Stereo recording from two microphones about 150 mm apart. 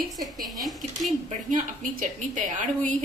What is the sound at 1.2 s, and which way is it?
A woman's voice, 60° right (ahead or behind).